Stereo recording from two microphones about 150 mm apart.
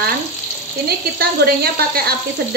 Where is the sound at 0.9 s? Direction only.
90° right.